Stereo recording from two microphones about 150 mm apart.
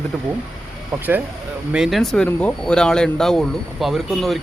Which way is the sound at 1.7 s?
Centre (ahead or behind).